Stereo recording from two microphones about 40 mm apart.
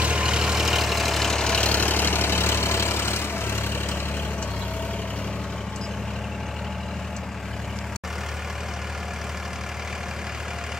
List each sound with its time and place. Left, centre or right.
0.0 s vehicle: right; by 1.3 s centre
1.3 s vehicle: centre
1.6 s vehicle: left